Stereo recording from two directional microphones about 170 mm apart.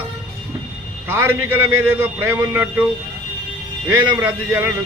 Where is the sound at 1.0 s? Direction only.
10° right (ahead or behind).